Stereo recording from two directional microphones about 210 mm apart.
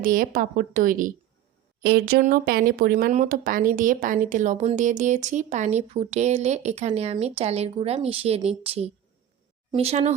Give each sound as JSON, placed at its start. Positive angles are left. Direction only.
{"t": 0.0, "sound": "speech", "side_deg": -40}